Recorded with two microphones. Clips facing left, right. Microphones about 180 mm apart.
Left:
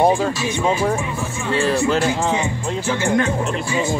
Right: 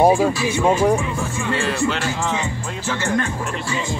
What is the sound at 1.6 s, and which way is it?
Speech, 40° left (ahead or behind).